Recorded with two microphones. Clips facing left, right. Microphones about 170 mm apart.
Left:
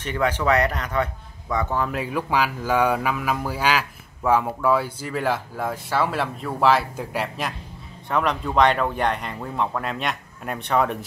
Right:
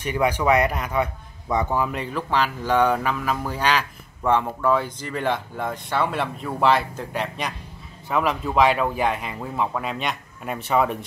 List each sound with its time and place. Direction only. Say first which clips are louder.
0.0 s speech: right 1 dB; 10° right (ahead or behind)
1.9 s speech: left 1 dB; 5° left (ahead or behind)